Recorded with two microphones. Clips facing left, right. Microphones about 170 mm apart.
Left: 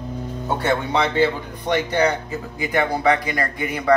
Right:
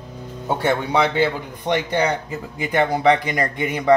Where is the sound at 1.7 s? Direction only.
20° right (ahead or behind).